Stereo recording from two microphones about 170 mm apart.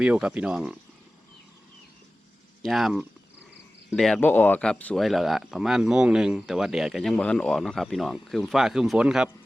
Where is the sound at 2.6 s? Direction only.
Centre (ahead or behind).